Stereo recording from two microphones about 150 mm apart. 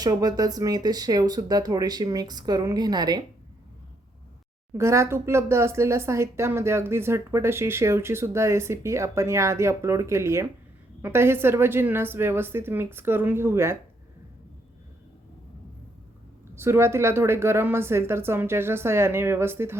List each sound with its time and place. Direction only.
0.0 s speech: 25° right (ahead or behind)
4.7 s speech: 20° right (ahead or behind)
16.6 s speech: 15° right (ahead or behind)